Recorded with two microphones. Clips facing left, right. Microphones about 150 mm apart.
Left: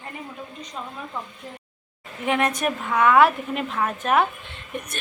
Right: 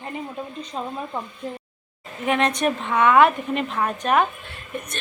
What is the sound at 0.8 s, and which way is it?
Speech, 35° right (ahead or behind).